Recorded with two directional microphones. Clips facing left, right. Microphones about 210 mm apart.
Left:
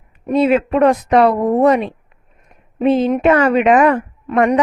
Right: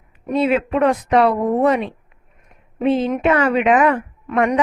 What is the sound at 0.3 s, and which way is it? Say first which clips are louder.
Speech: left 4 dB; 40° left (ahead or behind).